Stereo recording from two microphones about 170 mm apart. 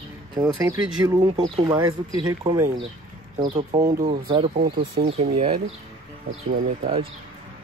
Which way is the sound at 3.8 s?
45° right (ahead or behind).